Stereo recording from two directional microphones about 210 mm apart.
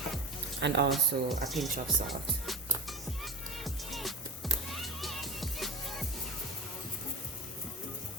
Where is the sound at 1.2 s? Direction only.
Centre (ahead or behind).